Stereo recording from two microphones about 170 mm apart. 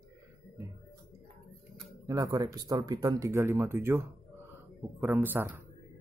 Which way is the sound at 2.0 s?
20° right (ahead or behind).